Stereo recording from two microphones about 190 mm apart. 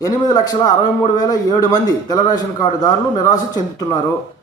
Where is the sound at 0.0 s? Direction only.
20° left (ahead or behind).